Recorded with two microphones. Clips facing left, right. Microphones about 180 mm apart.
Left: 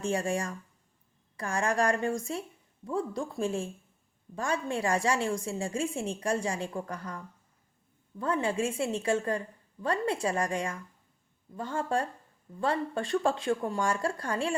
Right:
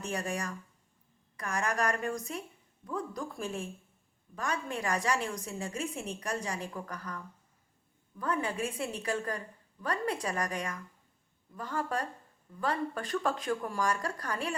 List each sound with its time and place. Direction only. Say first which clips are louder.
0.0 s a woman's voice: left 5 dB; 30° left (ahead or behind)
8.2 s a woman's voice: left 4 dB; 25° left (ahead or behind)